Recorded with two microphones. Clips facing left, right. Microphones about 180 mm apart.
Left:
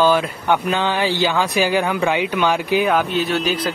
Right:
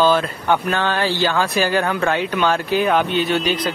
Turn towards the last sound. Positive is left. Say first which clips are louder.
# right 1 dB
turn(degrees=5)  # may be behind; listen again after turning